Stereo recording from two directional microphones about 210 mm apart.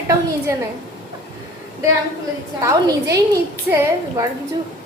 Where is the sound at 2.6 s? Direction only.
15° right (ahead or behind).